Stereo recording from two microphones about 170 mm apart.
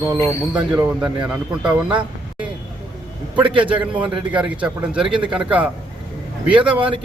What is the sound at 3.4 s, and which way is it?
Speech, 30° right (ahead or behind).